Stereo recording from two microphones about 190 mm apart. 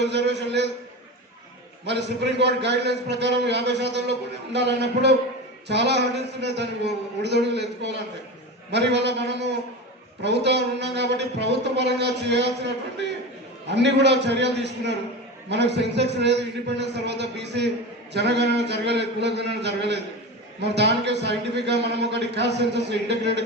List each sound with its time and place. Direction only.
0.0 s a man's voice: 65° right (ahead or behind)
1.8 s a man's voice: 65° right (ahead or behind)